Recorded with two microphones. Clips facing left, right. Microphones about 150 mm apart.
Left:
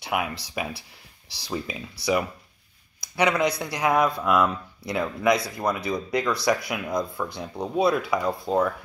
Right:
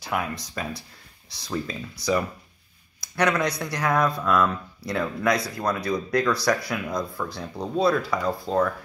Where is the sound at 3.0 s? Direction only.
5° left (ahead or behind).